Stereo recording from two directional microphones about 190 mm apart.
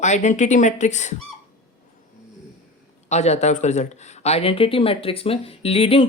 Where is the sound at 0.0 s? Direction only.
40° left (ahead or behind).